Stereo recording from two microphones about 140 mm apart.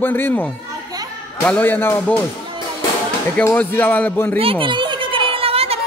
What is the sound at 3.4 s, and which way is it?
Speech, 15° left (ahead or behind).